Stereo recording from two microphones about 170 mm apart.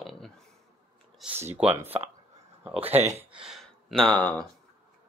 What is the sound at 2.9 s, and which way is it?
Speech, 40° right (ahead or behind).